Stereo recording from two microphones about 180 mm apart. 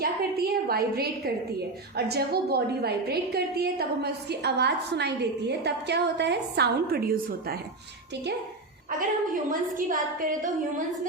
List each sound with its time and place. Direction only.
0.0 s a woman's voice: 60° right (ahead or behind)
9.0 s a woman's voice: 50° right (ahead or behind)